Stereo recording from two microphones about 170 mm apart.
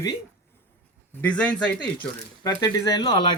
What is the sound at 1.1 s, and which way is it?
Speech, 10° left (ahead or behind).